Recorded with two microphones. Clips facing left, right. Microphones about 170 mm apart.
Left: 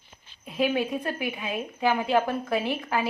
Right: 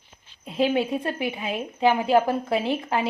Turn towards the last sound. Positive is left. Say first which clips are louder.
# right 3 dB
turn(degrees=-25)  # may be behind; listen again after turning